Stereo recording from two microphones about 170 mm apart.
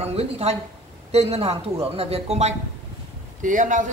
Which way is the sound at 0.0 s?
35° right (ahead or behind).